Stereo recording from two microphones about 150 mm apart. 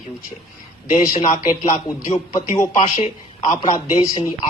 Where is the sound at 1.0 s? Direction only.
30° left (ahead or behind).